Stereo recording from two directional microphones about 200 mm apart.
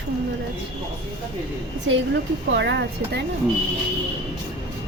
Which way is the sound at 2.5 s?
60° right (ahead or behind).